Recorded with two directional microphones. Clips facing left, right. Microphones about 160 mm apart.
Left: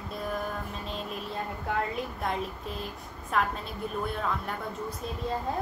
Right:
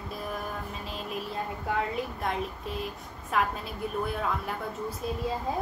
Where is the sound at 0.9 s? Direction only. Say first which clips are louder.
Right 2 dB; centre (ahead or behind).